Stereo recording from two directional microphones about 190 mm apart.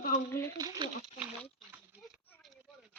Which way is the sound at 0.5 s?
20° right (ahead or behind).